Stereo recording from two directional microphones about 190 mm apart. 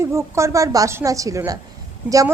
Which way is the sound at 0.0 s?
15° right (ahead or behind).